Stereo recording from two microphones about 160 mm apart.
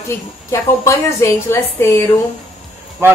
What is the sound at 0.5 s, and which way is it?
A woman's voice, 20° left (ahead or behind).